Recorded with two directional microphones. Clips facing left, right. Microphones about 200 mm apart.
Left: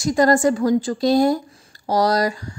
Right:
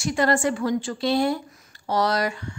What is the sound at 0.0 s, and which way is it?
A woman's voice, 40° left (ahead or behind).